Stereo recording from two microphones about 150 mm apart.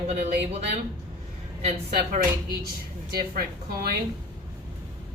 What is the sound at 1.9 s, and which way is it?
Speech, 90° right.